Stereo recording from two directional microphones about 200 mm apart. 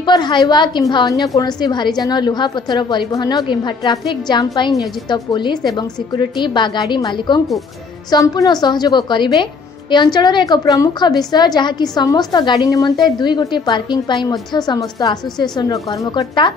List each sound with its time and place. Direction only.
0.0 s a woman's voice: 20° left (ahead or behind)